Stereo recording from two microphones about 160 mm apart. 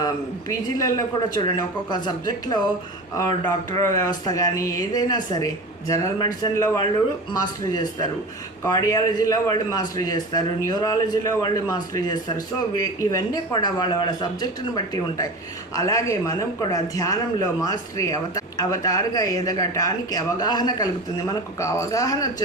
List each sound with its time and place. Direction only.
0.0 s speech: 20° left (ahead or behind)
15.7 s speech: 20° left (ahead or behind)